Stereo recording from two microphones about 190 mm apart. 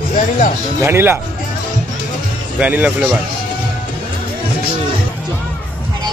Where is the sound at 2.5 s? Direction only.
10° right (ahead or behind).